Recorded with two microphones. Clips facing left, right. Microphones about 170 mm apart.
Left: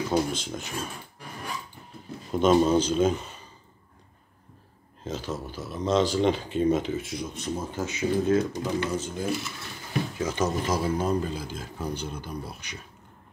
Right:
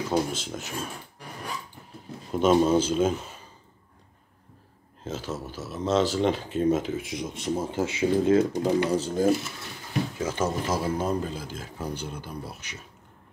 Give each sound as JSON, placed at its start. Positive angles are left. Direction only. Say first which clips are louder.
{"t": 0.1, "sound": "speech", "louder": "right 1 dB", "side_deg": -5}
{"t": 2.3, "sound": "speech", "louder": "even", "side_deg": -5}
{"t": 5.0, "sound": "speech", "louder": "even", "side_deg": -5}
{"t": 10.1, "sound": "speech", "louder": "left 2 dB", "side_deg": -5}